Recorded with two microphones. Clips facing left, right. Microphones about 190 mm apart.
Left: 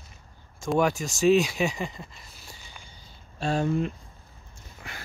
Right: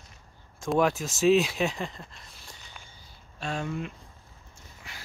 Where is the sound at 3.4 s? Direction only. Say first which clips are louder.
Left 7 dB; 35° left (ahead or behind).